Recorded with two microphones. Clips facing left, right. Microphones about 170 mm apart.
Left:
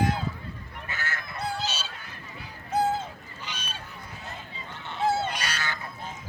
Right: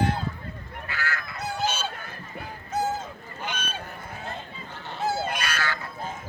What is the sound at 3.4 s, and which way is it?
Honk, 55° right (ahead or behind).